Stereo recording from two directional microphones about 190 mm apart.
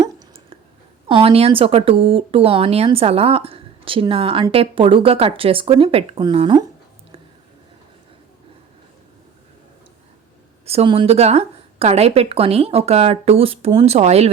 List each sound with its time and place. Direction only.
0.0 s a sound: 30° right (ahead or behind)
1.0 s a woman's voice: 30° right (ahead or behind)
10.7 s a woman's voice: 30° right (ahead or behind)